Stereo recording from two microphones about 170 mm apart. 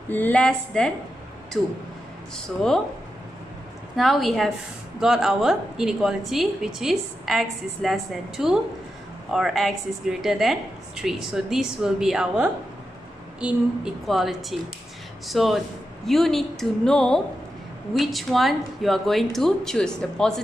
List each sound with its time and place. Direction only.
0.1 s a woman's voice: 10° left (ahead or behind)
3.9 s a woman's voice: centre (ahead or behind)